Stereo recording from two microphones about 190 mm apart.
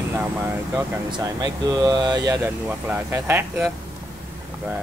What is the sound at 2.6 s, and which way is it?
Speech, 10° right (ahead or behind).